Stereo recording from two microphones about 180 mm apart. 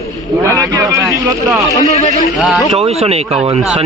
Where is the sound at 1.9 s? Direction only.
40° left (ahead or behind).